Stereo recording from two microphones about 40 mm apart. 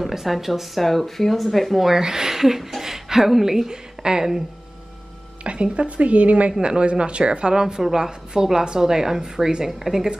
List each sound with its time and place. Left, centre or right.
0.0 s speech: centre
2.0 s a woman's voice: centre
5.4 s a woman's voice: right
7.6 s a woman's voice: centre